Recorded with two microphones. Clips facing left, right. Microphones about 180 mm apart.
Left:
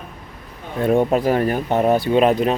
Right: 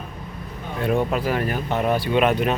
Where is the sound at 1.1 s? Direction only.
40° left (ahead or behind).